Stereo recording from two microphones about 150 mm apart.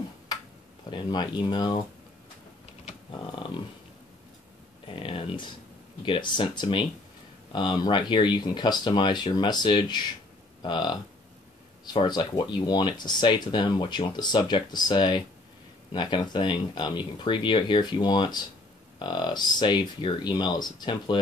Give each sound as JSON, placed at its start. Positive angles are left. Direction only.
{"t": 0.8, "sound": "speech", "side_deg": 30}
{"t": 4.8, "sound": "speech", "side_deg": 35}